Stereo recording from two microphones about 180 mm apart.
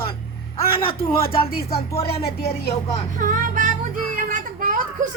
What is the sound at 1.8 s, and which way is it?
Speech, 35° left (ahead or behind).